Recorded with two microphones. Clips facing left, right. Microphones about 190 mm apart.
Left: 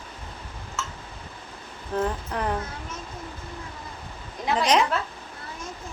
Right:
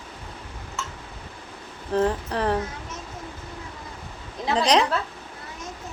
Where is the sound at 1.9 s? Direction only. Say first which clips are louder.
Right 4 dB; 30° right (ahead or behind).